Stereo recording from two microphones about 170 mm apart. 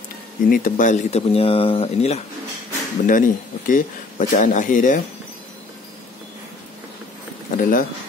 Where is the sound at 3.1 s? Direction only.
50° left (ahead or behind).